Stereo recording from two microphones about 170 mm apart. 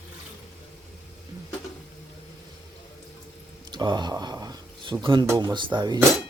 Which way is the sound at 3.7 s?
25° right (ahead or behind).